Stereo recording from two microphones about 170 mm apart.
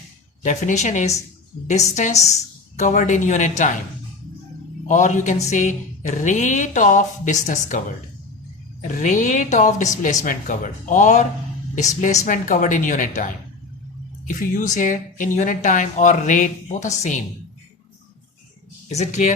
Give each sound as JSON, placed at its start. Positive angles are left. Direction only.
{"t": 0.4, "sound": "a woman's voice", "side_deg": 45}
{"t": 4.9, "sound": "a woman's voice", "side_deg": 45}
{"t": 18.9, "sound": "a woman's voice", "side_deg": 40}